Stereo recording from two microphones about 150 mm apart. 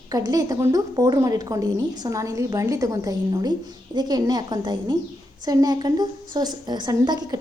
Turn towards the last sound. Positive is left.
turn(degrees=-25)  # may be behind; listen again after turning